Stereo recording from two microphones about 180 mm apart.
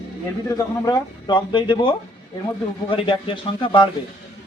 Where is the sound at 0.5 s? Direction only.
20° left (ahead or behind).